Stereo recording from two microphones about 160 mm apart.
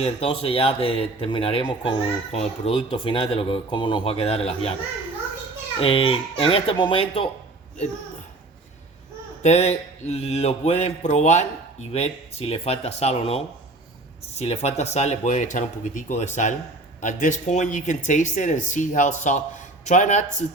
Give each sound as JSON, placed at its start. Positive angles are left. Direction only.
{"t": 0.0, "sound": "speech", "side_deg": 35}
{"t": 5.8, "sound": "speech", "side_deg": 35}
{"t": 9.4, "sound": "speech", "side_deg": 45}